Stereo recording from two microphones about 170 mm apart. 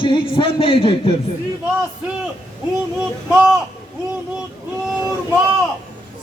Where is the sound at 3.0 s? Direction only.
5° right (ahead or behind).